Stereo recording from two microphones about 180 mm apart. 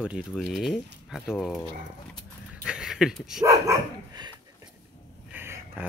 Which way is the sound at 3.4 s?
20° right (ahead or behind).